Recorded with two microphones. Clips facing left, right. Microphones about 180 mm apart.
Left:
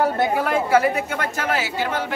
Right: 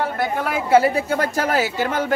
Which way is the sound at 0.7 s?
30° right (ahead or behind).